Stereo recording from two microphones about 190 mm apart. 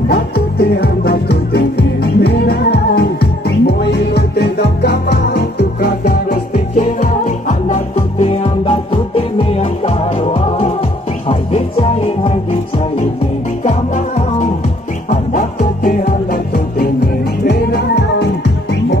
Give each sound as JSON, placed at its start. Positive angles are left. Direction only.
{"t": 0.1, "sound": "music", "side_deg": 55}
{"t": 13.7, "sound": "music", "side_deg": 40}